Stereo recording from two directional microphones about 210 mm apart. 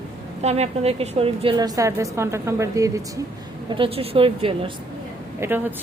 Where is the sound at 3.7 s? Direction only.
25° right (ahead or behind).